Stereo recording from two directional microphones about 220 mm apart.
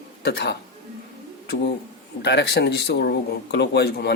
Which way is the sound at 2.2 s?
50° left (ahead or behind).